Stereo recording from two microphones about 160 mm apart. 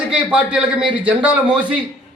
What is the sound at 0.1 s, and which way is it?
A man's voice, 5° right (ahead or behind).